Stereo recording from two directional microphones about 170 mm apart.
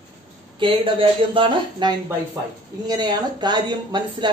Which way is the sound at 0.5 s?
30° right (ahead or behind).